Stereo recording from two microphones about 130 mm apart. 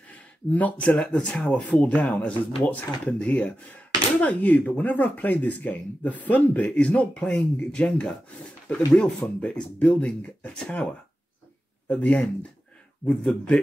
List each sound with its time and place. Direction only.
0.1 s speech: 10° left (ahead or behind)